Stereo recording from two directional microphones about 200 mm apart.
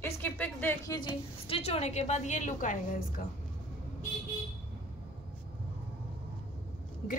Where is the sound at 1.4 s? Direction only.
30° left (ahead or behind).